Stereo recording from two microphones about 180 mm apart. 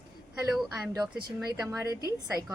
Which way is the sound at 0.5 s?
5° right (ahead or behind).